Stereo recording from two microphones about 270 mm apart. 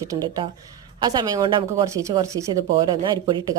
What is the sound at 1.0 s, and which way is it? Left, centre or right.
Speech, centre.